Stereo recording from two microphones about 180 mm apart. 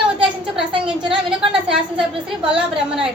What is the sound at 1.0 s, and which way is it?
Speech, 30° right (ahead or behind).